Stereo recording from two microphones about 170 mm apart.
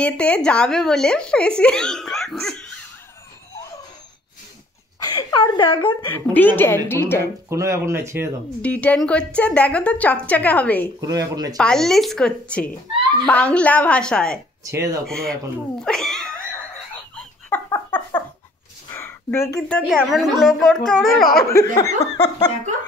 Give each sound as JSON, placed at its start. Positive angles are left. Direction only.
{"t": 0.0, "sound": "speech", "side_deg": 5}
{"t": 2.4, "sound": "dog", "side_deg": 5}
{"t": 5.0, "sound": "speech", "side_deg": 25}
{"t": 6.0, "sound": "a woman's voice", "side_deg": 10}
{"t": 7.4, "sound": "speech", "side_deg": -15}
{"t": 8.6, "sound": "a woman's voice", "side_deg": 10}
{"t": 11.0, "sound": "speech", "side_deg": -20}
{"t": 11.5, "sound": "a woman's voice", "side_deg": 5}
{"t": 14.6, "sound": "speech", "side_deg": -20}
{"t": 15.0, "sound": "speech", "side_deg": 5}
{"t": 17.6, "sound": "a sound", "side_deg": 10}
{"t": 19.9, "sound": "speech", "side_deg": 0}
{"t": 21.2, "sound": "speech", "side_deg": 60}
{"t": 21.7, "sound": "speech", "side_deg": 20}